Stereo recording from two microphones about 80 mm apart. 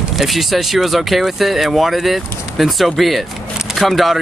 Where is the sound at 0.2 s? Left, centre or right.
Centre.